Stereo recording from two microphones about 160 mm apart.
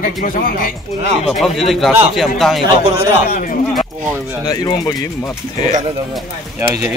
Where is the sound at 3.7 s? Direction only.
Centre (ahead or behind).